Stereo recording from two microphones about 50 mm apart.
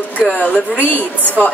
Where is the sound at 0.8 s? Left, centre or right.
Left.